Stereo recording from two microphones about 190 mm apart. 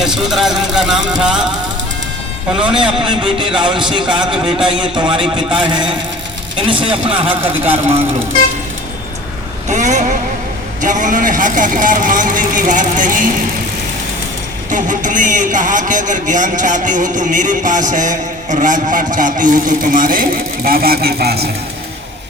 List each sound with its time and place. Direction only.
0.0 s a man's voice: centre (ahead or behind)
2.6 s a man's voice: 5° right (ahead or behind)
3.1 s a man's voice: 25° right (ahead or behind)
9.6 s a man's voice: 40° right (ahead or behind)
14.7 s a man's voice: 45° right (ahead or behind)